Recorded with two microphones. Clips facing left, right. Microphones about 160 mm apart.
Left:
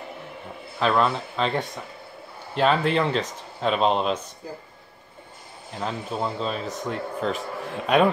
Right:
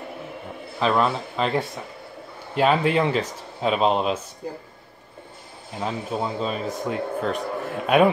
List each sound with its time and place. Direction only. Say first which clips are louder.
0.7 s speech: even; centre (ahead or behind)
5.8 s speech: right 2 dB; 5° right (ahead or behind)